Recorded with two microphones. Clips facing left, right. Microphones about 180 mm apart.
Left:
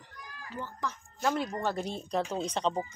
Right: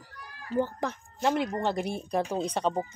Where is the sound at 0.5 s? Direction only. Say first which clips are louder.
Right 9 dB; 55° right (ahead or behind).